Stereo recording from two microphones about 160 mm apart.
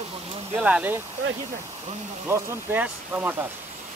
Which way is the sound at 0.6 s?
5° right (ahead or behind).